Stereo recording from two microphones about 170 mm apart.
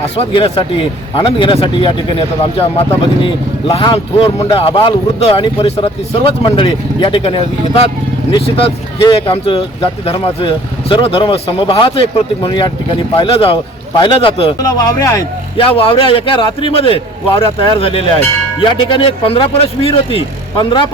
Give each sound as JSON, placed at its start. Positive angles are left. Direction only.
{"t": 0.0, "sound": "speech", "side_deg": 35}
{"t": 14.6, "sound": "speech", "side_deg": 20}
{"t": 15.5, "sound": "speech", "side_deg": 35}